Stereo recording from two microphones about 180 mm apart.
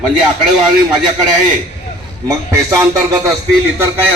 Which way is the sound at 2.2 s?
15° right (ahead or behind).